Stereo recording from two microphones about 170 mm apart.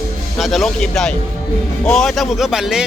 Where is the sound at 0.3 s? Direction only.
Centre (ahead or behind).